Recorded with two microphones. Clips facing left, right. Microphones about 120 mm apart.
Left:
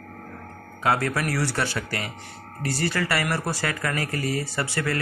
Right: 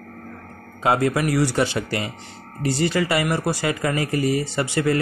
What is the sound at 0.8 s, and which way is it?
Speech, 20° right (ahead or behind).